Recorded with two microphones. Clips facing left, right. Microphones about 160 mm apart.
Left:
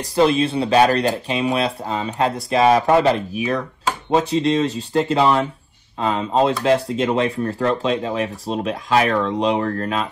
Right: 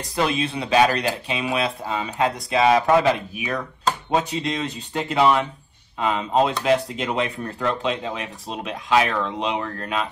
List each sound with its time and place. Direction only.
0.0 s speech: 30° left (ahead or behind)